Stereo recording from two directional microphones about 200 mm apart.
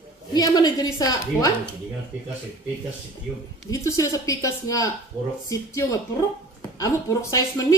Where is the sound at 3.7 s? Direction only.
15° left (ahead or behind).